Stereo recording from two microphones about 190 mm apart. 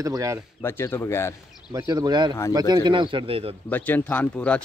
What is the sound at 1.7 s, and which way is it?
Speech, 20° right (ahead or behind).